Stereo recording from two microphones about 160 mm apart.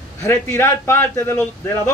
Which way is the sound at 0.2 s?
15° left (ahead or behind).